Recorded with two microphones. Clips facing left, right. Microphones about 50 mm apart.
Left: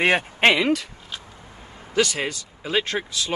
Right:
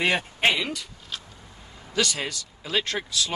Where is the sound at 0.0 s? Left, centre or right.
Left.